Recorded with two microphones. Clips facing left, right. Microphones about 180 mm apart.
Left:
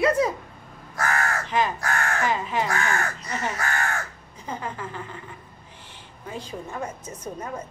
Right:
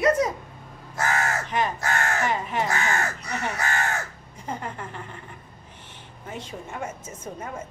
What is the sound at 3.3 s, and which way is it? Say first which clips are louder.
Speech: left 2 dB; 65° right (ahead or behind).